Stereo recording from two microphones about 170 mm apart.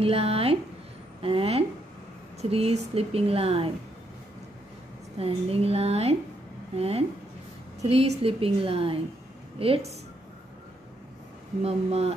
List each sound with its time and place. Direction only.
0.0 s speech: 35° right (ahead or behind)
5.2 s speech: 35° right (ahead or behind)
11.6 s speech: 35° right (ahead or behind)